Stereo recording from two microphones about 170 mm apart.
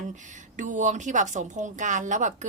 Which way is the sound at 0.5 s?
45° right (ahead or behind).